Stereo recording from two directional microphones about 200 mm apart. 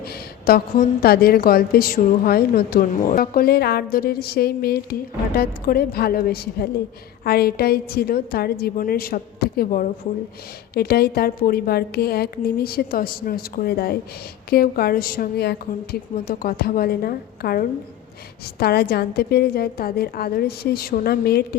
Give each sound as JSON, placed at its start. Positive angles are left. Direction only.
{"t": 0.0, "sound": "a woman's voice", "side_deg": 50}